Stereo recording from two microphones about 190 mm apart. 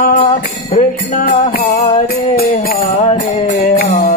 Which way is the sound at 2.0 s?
50° left (ahead or behind).